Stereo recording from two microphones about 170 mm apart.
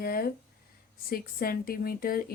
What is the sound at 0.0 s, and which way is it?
Speech, 60° left (ahead or behind).